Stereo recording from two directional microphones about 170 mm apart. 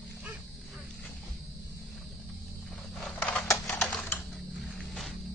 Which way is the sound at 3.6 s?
5° left (ahead or behind).